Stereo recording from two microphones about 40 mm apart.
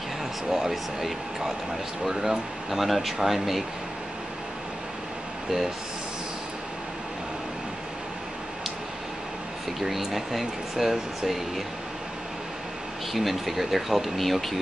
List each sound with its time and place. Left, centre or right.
0.5 s speech: centre
9.8 s speech: centre
13.1 s speech: centre